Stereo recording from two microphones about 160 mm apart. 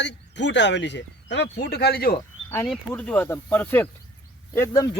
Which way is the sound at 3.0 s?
10° left (ahead or behind).